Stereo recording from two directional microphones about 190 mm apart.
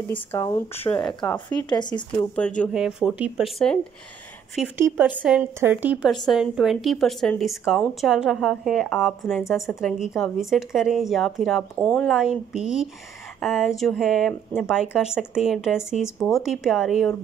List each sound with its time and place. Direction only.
0.1 s speech: 15° left (ahead or behind)
1.7 s speech: 25° left (ahead or behind)
2.1 s speech: 5° left (ahead or behind)
12.1 s speech: 5° right (ahead or behind)